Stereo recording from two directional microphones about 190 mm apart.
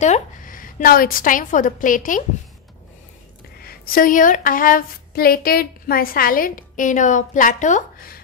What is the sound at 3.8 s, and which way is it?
Speech, 50° left (ahead or behind).